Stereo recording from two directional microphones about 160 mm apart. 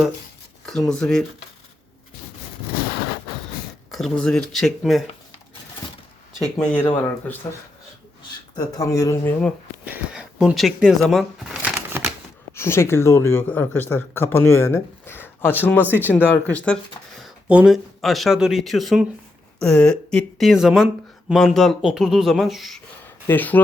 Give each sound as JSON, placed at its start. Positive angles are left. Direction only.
{"t": 0.6, "sound": "speech", "side_deg": 5}
{"t": 3.9, "sound": "speech", "side_deg": 5}
{"t": 6.4, "sound": "speech", "side_deg": 5}
{"t": 8.5, "sound": "speech", "side_deg": 25}
{"t": 9.8, "sound": "speech", "side_deg": -5}
{"t": 12.5, "sound": "speech", "side_deg": 15}
{"t": 17.2, "sound": "speech", "side_deg": -5}
{"t": 23.2, "sound": "speech", "side_deg": 10}